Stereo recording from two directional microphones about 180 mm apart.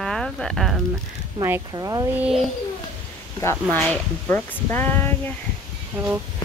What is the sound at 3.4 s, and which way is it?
Speech, 15° left (ahead or behind).